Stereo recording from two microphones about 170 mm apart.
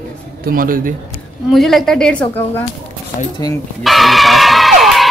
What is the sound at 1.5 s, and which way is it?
Speech, centre (ahead or behind).